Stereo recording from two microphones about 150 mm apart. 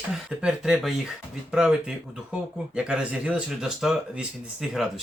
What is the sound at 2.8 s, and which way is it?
Speech, 5° right (ahead or behind).